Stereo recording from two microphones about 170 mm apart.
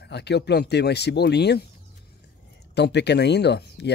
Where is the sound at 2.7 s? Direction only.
90° left.